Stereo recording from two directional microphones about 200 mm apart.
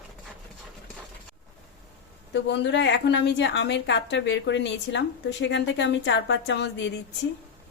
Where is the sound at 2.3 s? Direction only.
60° left (ahead or behind).